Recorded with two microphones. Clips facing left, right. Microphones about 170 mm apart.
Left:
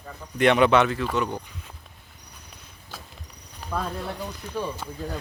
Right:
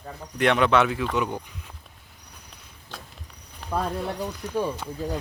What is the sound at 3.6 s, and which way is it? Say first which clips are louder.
Cricket: right 2 dB; centre (ahead or behind).